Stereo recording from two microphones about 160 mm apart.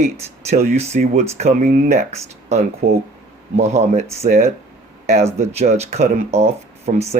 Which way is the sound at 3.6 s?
45° right (ahead or behind).